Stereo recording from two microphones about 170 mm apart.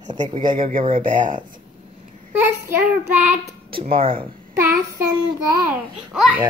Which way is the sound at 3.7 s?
30° right (ahead or behind).